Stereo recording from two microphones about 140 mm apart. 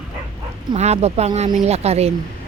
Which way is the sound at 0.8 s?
50° right (ahead or behind).